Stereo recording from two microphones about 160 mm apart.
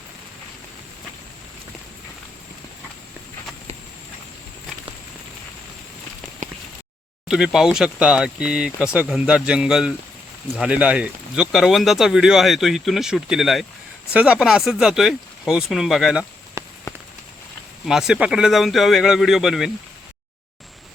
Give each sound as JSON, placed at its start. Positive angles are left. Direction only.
{"t": 7.3, "sound": "speech", "side_deg": -5}
{"t": 16.6, "sound": "rain on surface", "side_deg": -20}
{"t": 17.8, "sound": "speech", "side_deg": 0}